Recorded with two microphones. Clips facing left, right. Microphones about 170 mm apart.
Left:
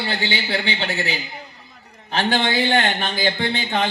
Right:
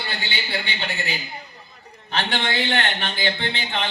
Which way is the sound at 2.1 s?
40° left (ahead or behind).